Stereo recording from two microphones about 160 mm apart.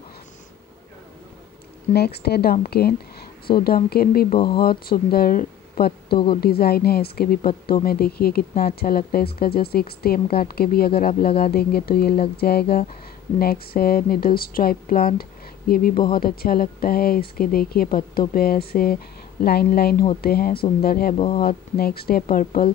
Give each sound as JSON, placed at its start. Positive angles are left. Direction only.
{"t": 2.0, "sound": "speech", "side_deg": 90}
{"t": 6.1, "sound": "a woman's voice", "side_deg": 30}
{"t": 6.4, "sound": "speech", "side_deg": 75}